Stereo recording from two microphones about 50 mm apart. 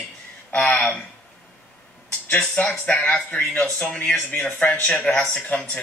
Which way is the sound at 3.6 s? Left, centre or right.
Left.